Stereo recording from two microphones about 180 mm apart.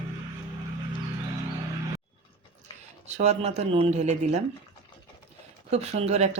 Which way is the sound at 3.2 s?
40° right (ahead or behind).